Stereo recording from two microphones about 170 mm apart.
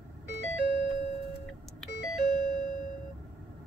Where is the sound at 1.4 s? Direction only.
Centre (ahead or behind).